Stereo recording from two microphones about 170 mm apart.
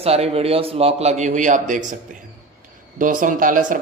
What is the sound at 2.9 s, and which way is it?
Speech, 50° right (ahead or behind).